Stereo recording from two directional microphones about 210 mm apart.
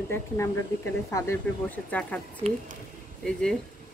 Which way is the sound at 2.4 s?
30° right (ahead or behind).